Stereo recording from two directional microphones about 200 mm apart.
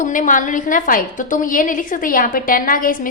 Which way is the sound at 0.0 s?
40° left (ahead or behind).